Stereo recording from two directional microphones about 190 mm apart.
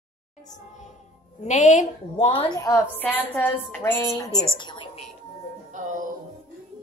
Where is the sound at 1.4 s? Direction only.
40° left (ahead or behind).